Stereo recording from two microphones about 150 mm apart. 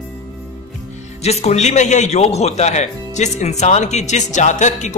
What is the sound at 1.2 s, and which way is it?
A man's voice, 45° left (ahead or behind).